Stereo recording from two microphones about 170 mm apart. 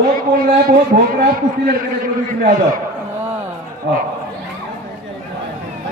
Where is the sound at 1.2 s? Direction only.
55° right (ahead or behind).